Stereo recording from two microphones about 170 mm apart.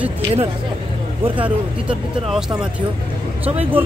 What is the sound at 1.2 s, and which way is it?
Speech, 30° right (ahead or behind).